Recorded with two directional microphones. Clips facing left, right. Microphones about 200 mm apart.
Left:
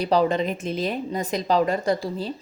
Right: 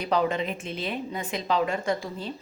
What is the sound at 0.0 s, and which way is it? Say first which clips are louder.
A woman's voice: left 5 dB; 35° left (ahead or behind).